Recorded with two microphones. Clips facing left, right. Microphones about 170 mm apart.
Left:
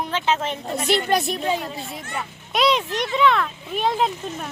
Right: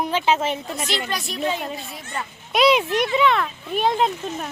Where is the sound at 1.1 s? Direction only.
55° left (ahead or behind).